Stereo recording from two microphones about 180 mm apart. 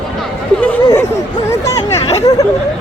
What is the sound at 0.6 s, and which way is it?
Chatter, 5° left (ahead or behind).